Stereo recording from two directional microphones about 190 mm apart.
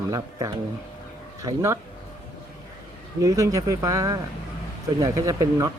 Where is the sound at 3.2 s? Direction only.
15° right (ahead or behind).